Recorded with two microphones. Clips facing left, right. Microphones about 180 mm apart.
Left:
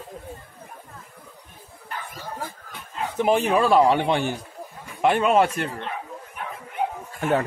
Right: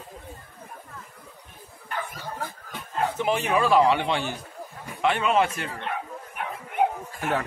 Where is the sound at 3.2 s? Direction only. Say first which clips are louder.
Left 6 dB; 40° left (ahead or behind).